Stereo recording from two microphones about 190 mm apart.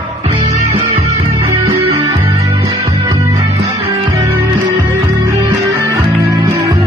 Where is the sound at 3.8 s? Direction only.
30° right (ahead or behind).